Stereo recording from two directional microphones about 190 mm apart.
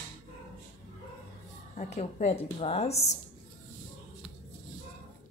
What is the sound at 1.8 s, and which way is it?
A woman's voice, 35° left (ahead or behind).